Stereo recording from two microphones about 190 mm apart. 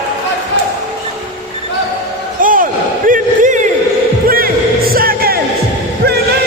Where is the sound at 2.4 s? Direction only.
45° right (ahead or behind).